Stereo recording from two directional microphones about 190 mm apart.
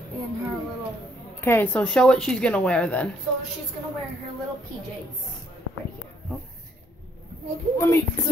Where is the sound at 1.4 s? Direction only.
10° left (ahead or behind).